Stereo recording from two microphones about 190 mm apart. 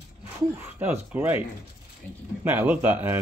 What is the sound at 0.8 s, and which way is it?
Speech, 10° right (ahead or behind).